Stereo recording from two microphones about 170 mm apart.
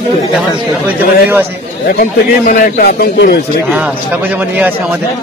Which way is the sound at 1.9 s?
55° left (ahead or behind).